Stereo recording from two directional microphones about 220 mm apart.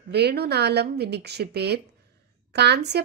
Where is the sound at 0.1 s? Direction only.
50° right (ahead or behind).